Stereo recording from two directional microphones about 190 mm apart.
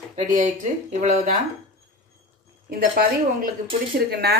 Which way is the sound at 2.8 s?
50° right (ahead or behind).